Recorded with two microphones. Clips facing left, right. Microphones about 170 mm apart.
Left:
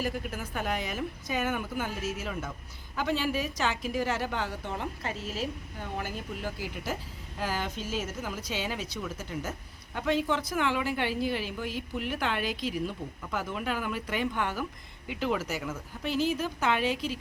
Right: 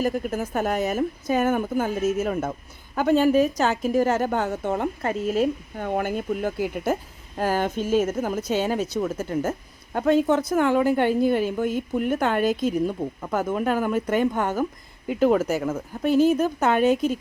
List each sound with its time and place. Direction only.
0.0 s a woman's voice: 45° right (ahead or behind)